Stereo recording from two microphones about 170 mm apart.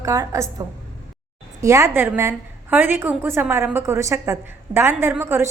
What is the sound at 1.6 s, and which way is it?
A woman's voice, 15° right (ahead or behind).